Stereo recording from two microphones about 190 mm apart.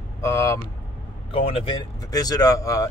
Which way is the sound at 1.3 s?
30° left (ahead or behind).